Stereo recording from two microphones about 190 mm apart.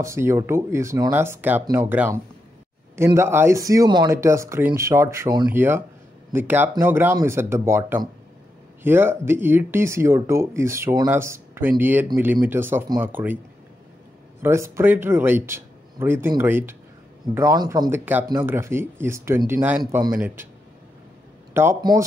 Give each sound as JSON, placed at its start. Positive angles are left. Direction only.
{"t": 0.0, "sound": "speech", "side_deg": -15}
{"t": 14.4, "sound": "speech", "side_deg": -15}
{"t": 20.2, "sound": "speech", "side_deg": -10}
{"t": 21.5, "sound": "speech", "side_deg": -15}